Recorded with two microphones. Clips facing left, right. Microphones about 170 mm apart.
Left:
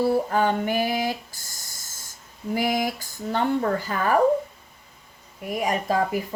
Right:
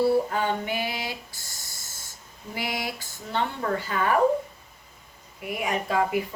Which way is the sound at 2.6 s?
45° left (ahead or behind).